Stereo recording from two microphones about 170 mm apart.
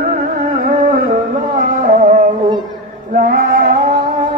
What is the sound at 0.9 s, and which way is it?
Music, 50° right (ahead or behind).